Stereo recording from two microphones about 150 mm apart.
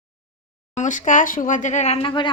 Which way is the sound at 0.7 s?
55° left (ahead or behind).